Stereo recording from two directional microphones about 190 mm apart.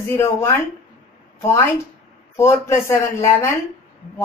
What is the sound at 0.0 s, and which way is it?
A woman's voice, 15° left (ahead or behind).